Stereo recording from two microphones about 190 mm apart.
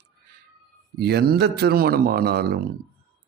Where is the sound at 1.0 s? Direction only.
55° right (ahead or behind).